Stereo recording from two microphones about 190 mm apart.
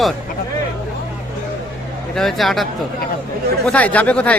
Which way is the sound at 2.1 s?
Centre (ahead or behind).